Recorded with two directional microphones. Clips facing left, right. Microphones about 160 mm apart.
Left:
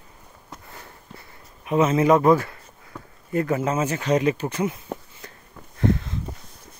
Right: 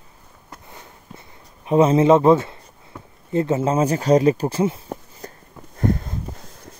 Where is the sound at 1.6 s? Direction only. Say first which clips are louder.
Right 4 dB; 30° right (ahead or behind).